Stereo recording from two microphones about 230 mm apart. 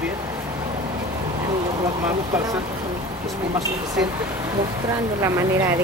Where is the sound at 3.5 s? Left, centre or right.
Centre.